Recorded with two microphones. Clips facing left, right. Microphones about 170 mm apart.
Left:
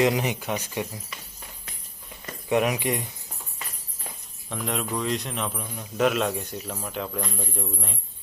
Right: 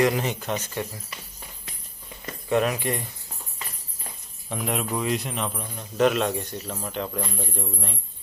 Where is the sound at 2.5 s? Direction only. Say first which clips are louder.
Even; 15° left (ahead or behind).